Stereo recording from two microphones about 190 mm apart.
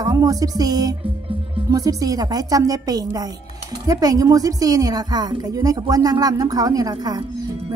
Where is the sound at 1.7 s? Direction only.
20° right (ahead or behind).